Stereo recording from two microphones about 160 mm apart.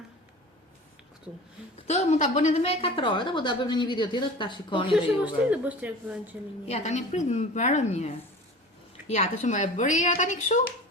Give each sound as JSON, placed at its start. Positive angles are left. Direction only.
{"t": 1.9, "sound": "a woman's voice", "side_deg": 50}
{"t": 5.2, "sound": "speech", "side_deg": -10}
{"t": 6.7, "sound": "a woman's voice", "side_deg": 45}